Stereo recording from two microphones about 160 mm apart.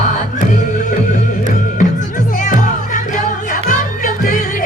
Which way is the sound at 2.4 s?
55° left (ahead or behind).